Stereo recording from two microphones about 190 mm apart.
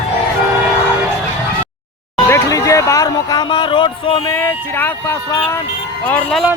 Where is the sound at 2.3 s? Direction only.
15° left (ahead or behind).